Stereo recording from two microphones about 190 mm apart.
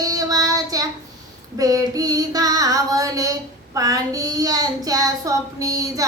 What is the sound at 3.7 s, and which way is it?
Child singing, 20° right (ahead or behind).